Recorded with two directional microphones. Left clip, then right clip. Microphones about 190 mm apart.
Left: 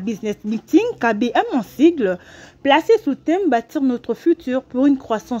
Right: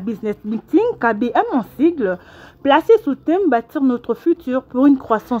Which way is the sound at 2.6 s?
15° left (ahead or behind).